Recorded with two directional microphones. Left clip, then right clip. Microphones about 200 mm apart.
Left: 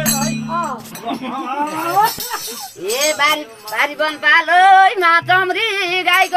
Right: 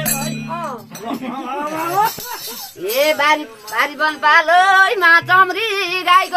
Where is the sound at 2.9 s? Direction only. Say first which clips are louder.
Right 1 dB; centre (ahead or behind).